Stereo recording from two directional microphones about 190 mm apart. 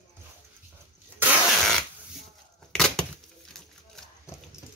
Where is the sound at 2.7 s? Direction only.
5° left (ahead or behind).